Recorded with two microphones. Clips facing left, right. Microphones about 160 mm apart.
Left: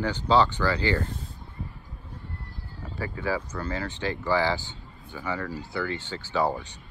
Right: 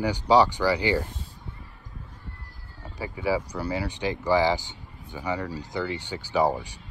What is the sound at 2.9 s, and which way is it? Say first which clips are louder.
Speech: right 3 dB; 15° right (ahead or behind).